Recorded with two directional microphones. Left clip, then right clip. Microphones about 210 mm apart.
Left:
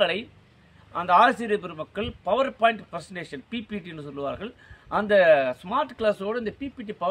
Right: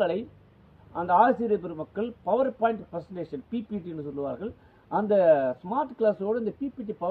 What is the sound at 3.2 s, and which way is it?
Speech, 15° left (ahead or behind).